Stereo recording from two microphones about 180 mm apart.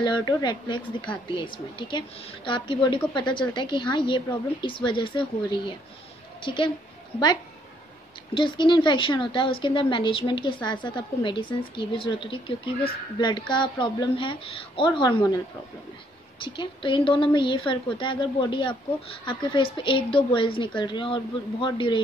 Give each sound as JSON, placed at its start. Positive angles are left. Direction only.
{"t": 0.0, "sound": "a woman's voice", "side_deg": 25}
{"t": 8.4, "sound": "a woman's voice", "side_deg": 25}